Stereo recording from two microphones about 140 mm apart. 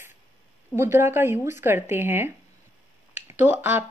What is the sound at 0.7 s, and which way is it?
Speech, 20° right (ahead or behind).